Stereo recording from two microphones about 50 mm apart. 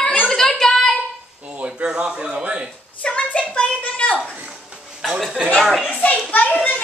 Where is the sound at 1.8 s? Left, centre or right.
Centre.